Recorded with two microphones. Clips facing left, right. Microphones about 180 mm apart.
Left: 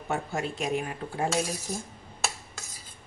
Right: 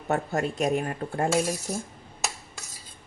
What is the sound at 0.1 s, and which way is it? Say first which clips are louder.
A woman's voice: right 4 dB; 45° right (ahead or behind).